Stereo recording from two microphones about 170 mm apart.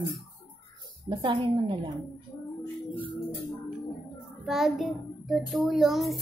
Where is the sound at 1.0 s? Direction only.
25° right (ahead or behind).